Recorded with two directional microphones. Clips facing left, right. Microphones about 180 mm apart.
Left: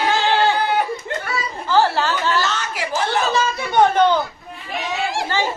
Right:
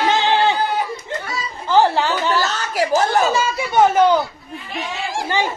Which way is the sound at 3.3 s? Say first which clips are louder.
Right 1 dB; 10° right (ahead or behind).